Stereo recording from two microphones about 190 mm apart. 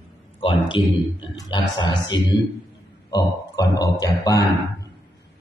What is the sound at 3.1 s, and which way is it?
A man's voice, 20° left (ahead or behind).